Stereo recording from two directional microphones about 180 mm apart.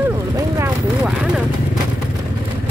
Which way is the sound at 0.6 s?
5° right (ahead or behind).